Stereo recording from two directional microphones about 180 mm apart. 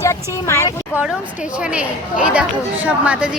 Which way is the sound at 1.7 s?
5° right (ahead or behind).